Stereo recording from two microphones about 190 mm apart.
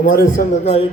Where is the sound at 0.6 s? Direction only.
35° left (ahead or behind).